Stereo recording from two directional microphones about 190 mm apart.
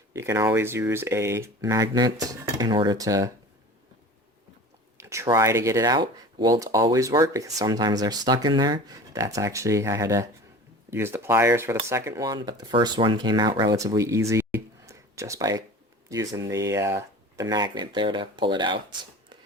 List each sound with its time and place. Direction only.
0.1 s speech: 15° right (ahead or behind)
4.9 s speech: 15° right (ahead or behind)